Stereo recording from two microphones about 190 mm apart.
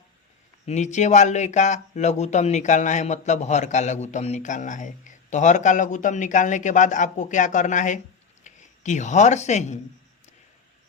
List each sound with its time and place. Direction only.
0.6 s speech: 35° left (ahead or behind)